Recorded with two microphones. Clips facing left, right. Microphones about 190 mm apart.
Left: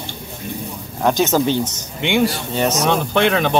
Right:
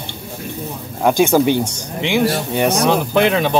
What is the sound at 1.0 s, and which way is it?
Speech, 10° right (ahead or behind).